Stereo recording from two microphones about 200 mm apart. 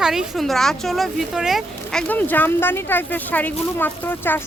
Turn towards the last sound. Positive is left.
turn(degrees=10)  # may be behind; listen again after turning